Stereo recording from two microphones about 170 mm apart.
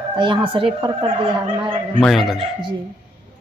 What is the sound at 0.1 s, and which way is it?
Speech, 30° right (ahead or behind).